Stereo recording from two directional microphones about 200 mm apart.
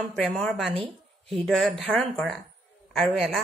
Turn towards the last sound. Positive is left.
turn(degrees=0)  # may be behind; listen again after turning